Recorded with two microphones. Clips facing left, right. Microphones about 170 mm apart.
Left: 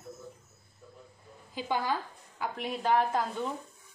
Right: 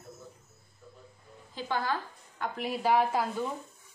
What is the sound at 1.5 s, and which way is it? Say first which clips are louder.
Speech: left 1 dB; 15° left (ahead or behind).